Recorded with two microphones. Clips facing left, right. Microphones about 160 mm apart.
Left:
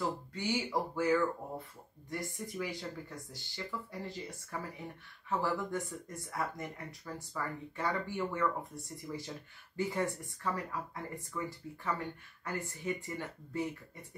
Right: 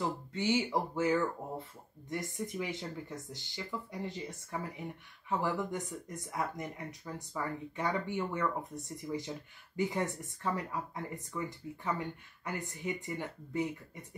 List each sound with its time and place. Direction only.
0.3 s speech: 25° right (ahead or behind)